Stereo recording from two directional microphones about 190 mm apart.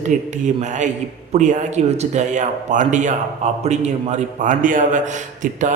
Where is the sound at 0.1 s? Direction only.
40° right (ahead or behind).